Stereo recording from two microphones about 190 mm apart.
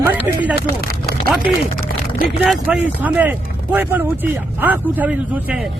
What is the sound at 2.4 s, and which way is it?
Speech, 5° right (ahead or behind).